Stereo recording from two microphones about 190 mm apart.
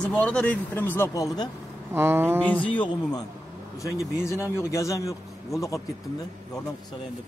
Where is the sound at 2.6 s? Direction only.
25° left (ahead or behind).